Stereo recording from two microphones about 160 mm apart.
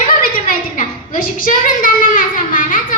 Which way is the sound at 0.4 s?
65° left (ahead or behind).